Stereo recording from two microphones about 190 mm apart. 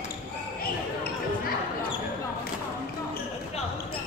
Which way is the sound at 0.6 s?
50° left (ahead or behind).